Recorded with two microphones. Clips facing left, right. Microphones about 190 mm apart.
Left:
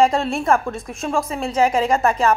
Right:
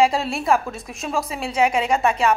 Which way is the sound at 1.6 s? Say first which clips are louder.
Left 2 dB; 35° left (ahead or behind).